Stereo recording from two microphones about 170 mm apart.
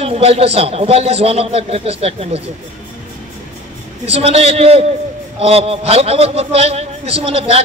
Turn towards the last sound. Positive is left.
turn(degrees=-35)  # may be behind; listen again after turning